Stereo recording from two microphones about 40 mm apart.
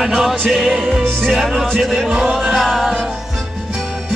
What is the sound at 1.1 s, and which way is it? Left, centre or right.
Music, right.